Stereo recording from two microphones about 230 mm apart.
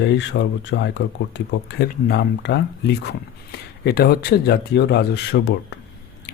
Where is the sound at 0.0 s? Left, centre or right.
Left.